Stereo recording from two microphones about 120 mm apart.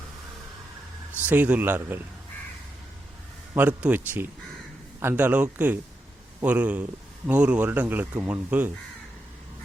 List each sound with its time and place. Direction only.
1.3 s speech: 15° right (ahead or behind)
3.5 s speech: 15° right (ahead or behind)